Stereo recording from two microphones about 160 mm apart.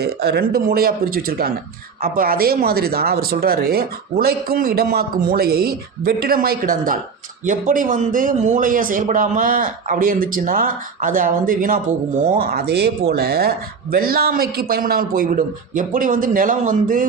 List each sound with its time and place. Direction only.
0.0 s speech: 90° right; by 11.9 s 60° right (ahead or behind)
12.4 s speech: 75° right (ahead or behind); by 17.1 s 55° right (ahead or behind)